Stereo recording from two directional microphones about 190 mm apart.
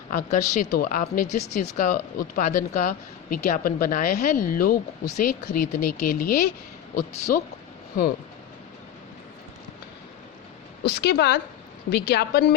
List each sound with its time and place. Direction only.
0.1 s speech: 40° left (ahead or behind)
10.8 s a woman's voice: 60° left (ahead or behind)